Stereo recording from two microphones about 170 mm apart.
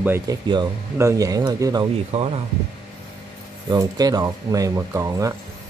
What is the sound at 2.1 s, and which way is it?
Speech, 35° right (ahead or behind).